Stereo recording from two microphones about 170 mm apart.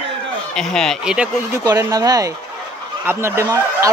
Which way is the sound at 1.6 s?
20° right (ahead or behind).